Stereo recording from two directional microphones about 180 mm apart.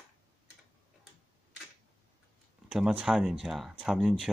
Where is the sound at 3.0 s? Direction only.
5° right (ahead or behind).